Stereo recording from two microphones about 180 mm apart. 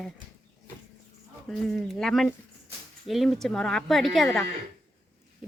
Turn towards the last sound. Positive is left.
turn(degrees=0)  # may be behind; listen again after turning